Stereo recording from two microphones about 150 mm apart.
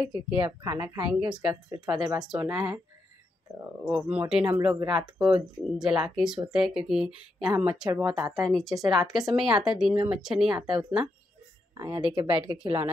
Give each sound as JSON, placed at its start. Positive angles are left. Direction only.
{"t": 0.5, "sound": "speech", "side_deg": -15}
{"t": 1.2, "sound": "speech", "side_deg": -30}
{"t": 2.5, "sound": "speech", "side_deg": -10}
{"t": 8.5, "sound": "speech", "side_deg": 5}
{"t": 11.7, "sound": "speech", "side_deg": -25}
{"t": 12.5, "sound": "speech", "side_deg": -10}